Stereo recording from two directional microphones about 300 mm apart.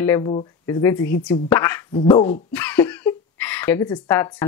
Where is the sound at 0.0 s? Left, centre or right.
Centre.